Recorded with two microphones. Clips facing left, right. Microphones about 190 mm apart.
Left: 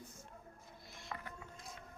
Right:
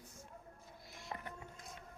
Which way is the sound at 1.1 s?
25° right (ahead or behind).